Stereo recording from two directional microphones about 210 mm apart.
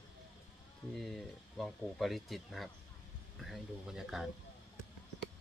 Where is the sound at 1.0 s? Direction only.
Centre (ahead or behind).